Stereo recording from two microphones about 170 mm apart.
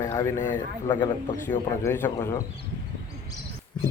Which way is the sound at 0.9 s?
25° left (ahead or behind).